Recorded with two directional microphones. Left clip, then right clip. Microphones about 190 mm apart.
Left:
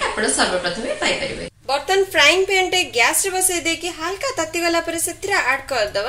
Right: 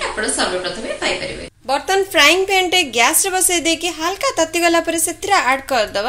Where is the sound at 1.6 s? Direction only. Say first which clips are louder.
Right 1 dB; 30° right (ahead or behind).